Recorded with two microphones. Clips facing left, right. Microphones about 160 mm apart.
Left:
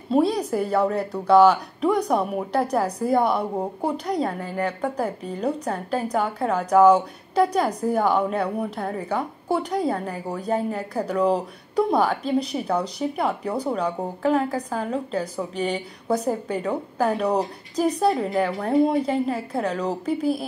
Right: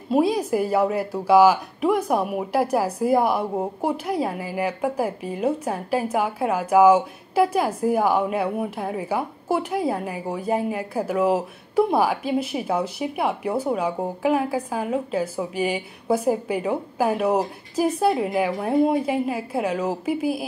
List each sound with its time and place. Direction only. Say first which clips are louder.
0.1 s a woman's voice: right 1 dB; 5° right (ahead or behind)